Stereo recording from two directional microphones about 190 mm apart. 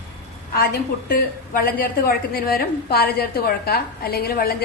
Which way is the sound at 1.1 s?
50° left (ahead or behind).